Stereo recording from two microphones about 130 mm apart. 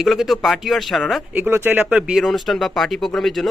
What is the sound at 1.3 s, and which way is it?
Speech, 15° right (ahead or behind).